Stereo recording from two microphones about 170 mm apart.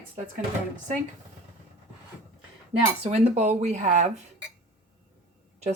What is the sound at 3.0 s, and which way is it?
Speech, 40° right (ahead or behind).